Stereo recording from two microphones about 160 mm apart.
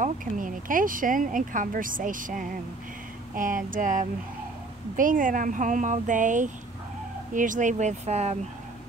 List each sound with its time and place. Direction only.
0.0 s speech: 55° right (ahead or behind)